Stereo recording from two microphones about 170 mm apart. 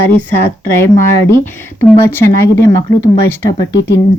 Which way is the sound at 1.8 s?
15° left (ahead or behind).